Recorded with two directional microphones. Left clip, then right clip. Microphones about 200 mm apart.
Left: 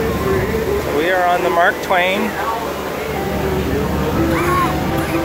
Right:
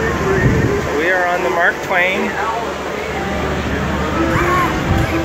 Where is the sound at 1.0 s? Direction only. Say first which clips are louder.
Left 1 dB; 15° left (ahead or behind).